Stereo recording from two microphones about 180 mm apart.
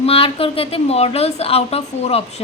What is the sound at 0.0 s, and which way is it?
A woman's voice, 30° left (ahead or behind).